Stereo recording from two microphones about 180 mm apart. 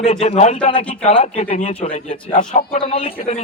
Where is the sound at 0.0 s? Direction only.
40° left (ahead or behind).